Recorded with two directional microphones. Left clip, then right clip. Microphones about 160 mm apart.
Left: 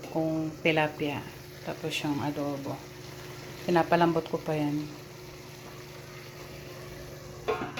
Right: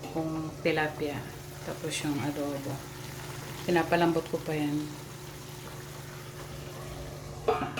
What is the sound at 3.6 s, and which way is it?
Speech, 10° left (ahead or behind).